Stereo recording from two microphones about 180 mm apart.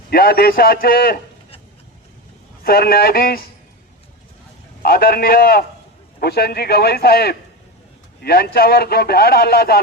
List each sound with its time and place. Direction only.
0.1 s a man's voice: 55° left (ahead or behind)
2.6 s a man's voice: 55° left (ahead or behind)
4.8 s a man's voice: 55° left (ahead or behind)